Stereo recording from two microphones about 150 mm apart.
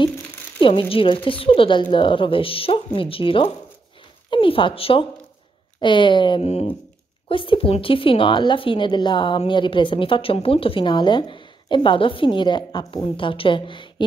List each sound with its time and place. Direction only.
0.6 s a woman's voice: 35° left (ahead or behind)
6.4 s a woman's voice: 45° left (ahead or behind)